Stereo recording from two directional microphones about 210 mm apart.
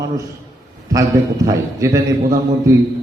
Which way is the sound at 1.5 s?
15° right (ahead or behind).